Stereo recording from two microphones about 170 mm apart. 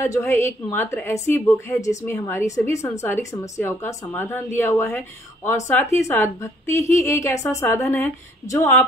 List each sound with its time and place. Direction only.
0.3 s a woman's voice: 15° left (ahead or behind)